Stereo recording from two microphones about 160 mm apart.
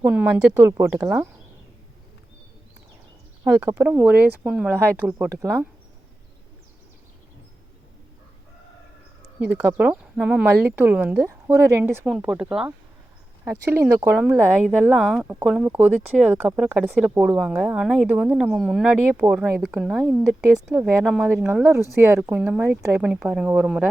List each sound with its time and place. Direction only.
0.0 s speech: 10° right (ahead or behind)
3.4 s speech: 15° right (ahead or behind)
9.6 s speech: 10° right (ahead or behind)
12.0 s speech: 5° right (ahead or behind)
13.7 s speech: 15° right (ahead or behind)
21.2 s speech: 15° right (ahead or behind)